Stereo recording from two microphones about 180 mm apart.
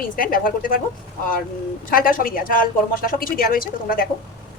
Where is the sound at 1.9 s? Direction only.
50° left (ahead or behind).